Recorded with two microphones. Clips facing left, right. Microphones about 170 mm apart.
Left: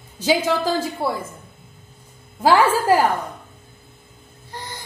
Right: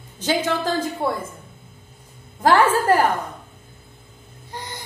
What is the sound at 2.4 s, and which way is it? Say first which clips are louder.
Speech: even; 10° left (ahead or behind).